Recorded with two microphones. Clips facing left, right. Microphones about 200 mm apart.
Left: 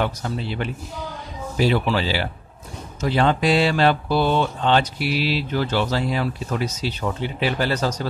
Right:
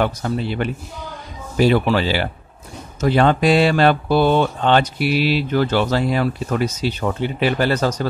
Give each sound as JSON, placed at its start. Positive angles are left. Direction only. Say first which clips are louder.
{"t": 0.0, "sound": "speech", "louder": "right 4 dB", "side_deg": -55}